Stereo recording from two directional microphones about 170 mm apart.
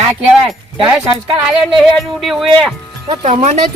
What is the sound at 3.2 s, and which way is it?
Speech, 40° right (ahead or behind).